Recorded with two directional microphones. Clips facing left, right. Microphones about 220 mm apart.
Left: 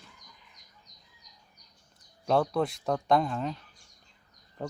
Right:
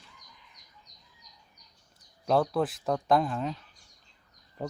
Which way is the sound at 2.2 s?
Centre (ahead or behind).